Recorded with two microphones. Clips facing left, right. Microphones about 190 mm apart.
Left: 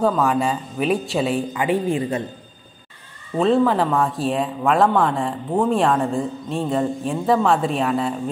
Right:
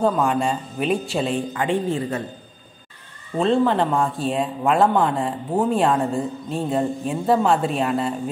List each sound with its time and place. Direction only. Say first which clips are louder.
0.0 s speech: left 1 dB; centre (ahead or behind)
3.3 s speech: left 1 dB; centre (ahead or behind)